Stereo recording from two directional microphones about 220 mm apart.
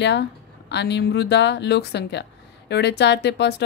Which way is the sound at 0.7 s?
50° left (ahead or behind).